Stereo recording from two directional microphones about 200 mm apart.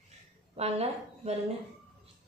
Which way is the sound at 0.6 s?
30° right (ahead or behind).